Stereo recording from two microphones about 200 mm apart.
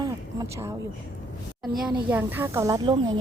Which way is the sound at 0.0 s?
15° right (ahead or behind).